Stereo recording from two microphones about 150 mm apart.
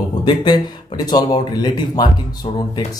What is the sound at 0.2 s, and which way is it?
Speech, 30° left (ahead or behind).